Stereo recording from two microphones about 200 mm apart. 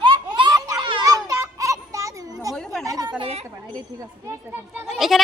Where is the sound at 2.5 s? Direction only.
Centre (ahead or behind).